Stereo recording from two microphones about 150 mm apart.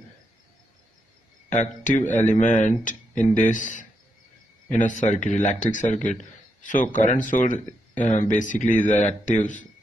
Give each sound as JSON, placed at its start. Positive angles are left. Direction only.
{"t": 1.9, "sound": "speech", "side_deg": 55}